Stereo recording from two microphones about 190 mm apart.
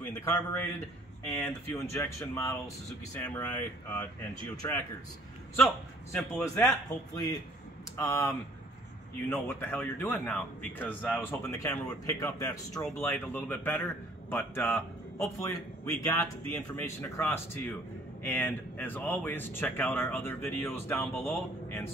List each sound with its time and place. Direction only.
0.2 s speech: 15° left (ahead or behind)
1.2 s speech: 5° left (ahead or behind)
1.9 s speech: 15° left (ahead or behind)
6.3 s a man's voice: 15° left (ahead or behind)